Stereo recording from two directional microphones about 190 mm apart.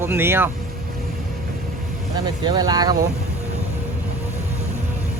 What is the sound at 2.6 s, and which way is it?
Speech, 20° right (ahead or behind).